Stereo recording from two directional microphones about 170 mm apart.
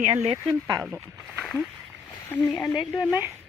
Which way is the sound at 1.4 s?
Centre (ahead or behind).